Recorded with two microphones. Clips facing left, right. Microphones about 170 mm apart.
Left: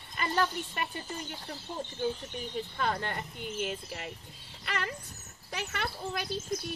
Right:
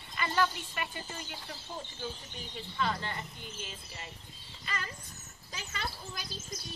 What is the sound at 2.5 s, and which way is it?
Speech, 50° left (ahead or behind).